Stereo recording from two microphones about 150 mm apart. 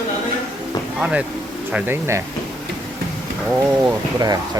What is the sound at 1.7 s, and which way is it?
Speech, 15° right (ahead or behind).